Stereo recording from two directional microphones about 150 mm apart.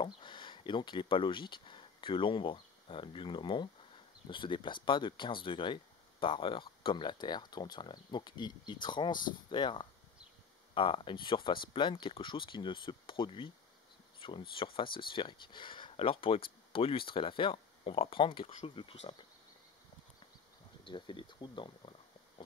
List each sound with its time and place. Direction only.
0.0 s speech: 35° left (ahead or behind)
20.8 s speech: 30° left (ahead or behind)